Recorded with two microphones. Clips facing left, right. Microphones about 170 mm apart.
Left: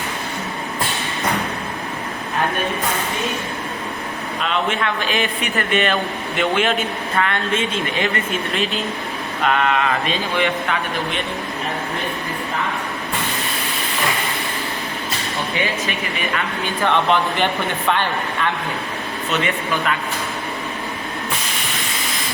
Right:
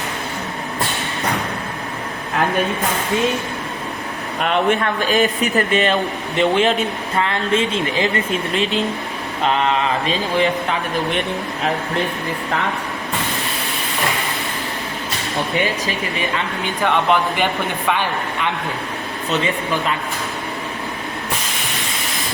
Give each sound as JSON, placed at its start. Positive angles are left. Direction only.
{"t": 4.4, "sound": "speech", "side_deg": -55}
{"t": 16.8, "sound": "speech", "side_deg": -10}